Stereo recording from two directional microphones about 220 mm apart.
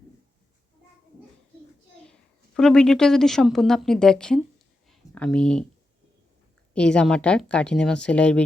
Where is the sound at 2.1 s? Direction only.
5° left (ahead or behind).